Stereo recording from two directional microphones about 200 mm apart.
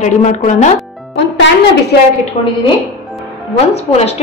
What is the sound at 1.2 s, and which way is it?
Music, 60° left (ahead or behind).